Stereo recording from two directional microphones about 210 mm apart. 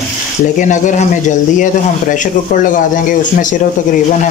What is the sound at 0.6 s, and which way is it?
Speech, 35° left (ahead or behind).